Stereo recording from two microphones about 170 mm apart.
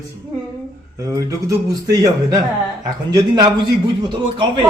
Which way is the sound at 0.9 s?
20° right (ahead or behind).